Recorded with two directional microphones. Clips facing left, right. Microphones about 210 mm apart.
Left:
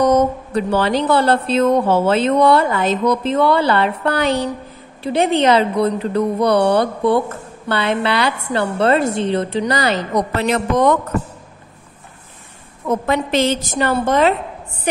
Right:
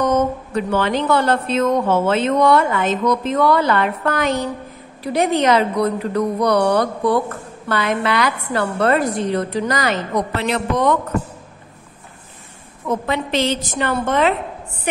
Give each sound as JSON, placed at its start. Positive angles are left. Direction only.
{"t": 0.0, "sound": "speech", "side_deg": 35}
{"t": 13.0, "sound": "speech", "side_deg": 45}